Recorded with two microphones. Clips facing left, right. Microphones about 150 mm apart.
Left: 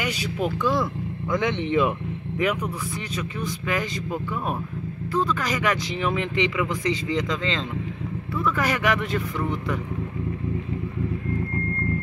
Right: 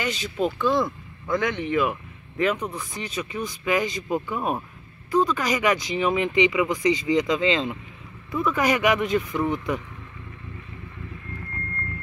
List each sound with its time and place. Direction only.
0.0 s speech: 10° left (ahead or behind)
1.3 s speech: 25° left (ahead or behind)
2.4 s speech: 10° left (ahead or behind)
3.2 s speech: 10° right (ahead or behind)